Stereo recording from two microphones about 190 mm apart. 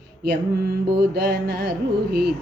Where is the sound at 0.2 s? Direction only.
55° right (ahead or behind).